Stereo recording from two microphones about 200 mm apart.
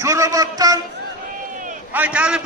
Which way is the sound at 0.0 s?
15° right (ahead or behind).